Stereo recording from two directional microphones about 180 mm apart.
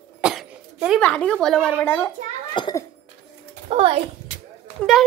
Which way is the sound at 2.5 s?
25° left (ahead or behind).